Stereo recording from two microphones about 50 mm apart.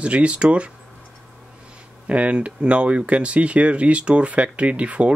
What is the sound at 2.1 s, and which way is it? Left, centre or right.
Speech, right.